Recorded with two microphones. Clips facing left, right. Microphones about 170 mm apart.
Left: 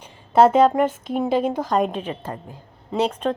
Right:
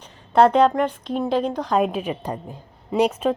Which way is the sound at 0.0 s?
5° left (ahead or behind).